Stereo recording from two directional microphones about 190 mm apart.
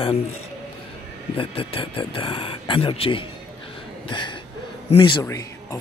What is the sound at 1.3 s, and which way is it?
Speech, 30° left (ahead or behind).